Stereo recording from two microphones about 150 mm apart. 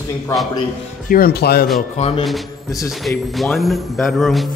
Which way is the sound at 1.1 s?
85° left.